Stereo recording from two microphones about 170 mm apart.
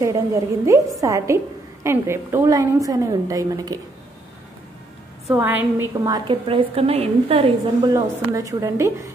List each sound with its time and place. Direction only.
0.0 s a woman's voice: 20° right (ahead or behind)
5.3 s a woman's voice: 15° right (ahead or behind)
6.0 s a woman's voice: 25° right (ahead or behind)
7.9 s a woman's voice: 20° right (ahead or behind)